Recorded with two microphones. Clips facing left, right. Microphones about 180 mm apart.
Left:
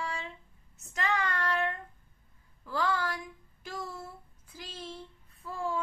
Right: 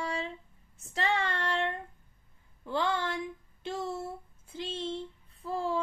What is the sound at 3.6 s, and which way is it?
A woman's voice, 25° right (ahead or behind).